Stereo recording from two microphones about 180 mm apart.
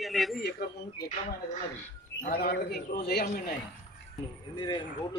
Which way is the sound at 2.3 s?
60° left (ahead or behind).